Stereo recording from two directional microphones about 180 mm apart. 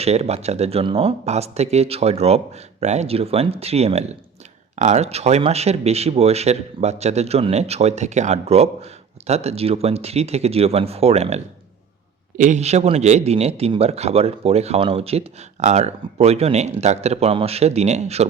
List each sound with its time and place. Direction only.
0.0 s speech: 35° right (ahead or behind)